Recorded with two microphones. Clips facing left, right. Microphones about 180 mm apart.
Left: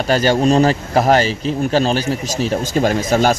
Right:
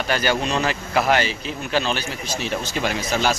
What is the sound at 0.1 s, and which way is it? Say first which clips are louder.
Speech: left 9 dB; 35° left (ahead or behind).